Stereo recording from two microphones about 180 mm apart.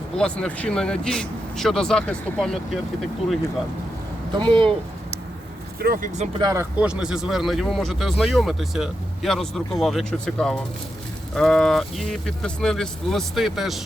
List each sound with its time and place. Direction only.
0.2 s speech: 5° left (ahead or behind)
4.4 s speech: 25° right (ahead or behind)
5.8 s speech: 55° right (ahead or behind)
6.4 s speech: 20° right (ahead or behind)
6.7 s speech: 5° right (ahead or behind)